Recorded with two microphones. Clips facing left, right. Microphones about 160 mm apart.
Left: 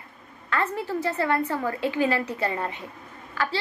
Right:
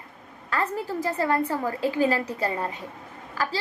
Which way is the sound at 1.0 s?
35° right (ahead or behind).